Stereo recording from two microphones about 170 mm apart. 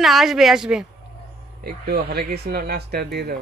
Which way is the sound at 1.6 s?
65° right (ahead or behind).